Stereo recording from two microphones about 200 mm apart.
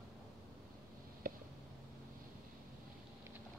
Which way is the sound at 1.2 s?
45° right (ahead or behind).